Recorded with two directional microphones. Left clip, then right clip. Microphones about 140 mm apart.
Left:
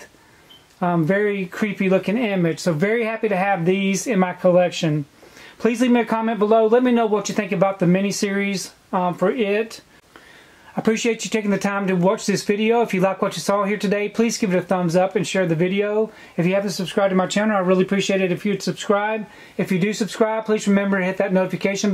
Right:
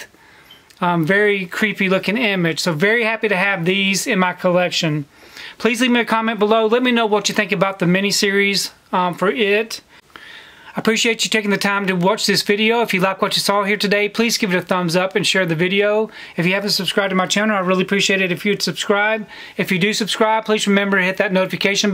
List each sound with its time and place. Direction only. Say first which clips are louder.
0.7 s speech: right 4 dB; 35° right (ahead or behind)
10.8 s speech: right 4 dB; 25° right (ahead or behind)